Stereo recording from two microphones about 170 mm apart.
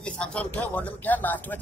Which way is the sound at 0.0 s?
5° left (ahead or behind).